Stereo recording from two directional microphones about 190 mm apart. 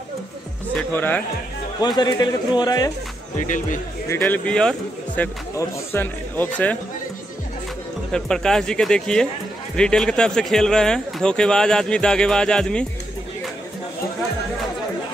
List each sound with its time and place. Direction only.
0.7 s a man's voice: 10° left (ahead or behind)
1.8 s a man's voice: 25° left (ahead or behind)
3.3 s speech: 45° left (ahead or behind)
4.2 s a man's voice: 5° left (ahead or behind)
8.1 s speech: 5° left (ahead or behind)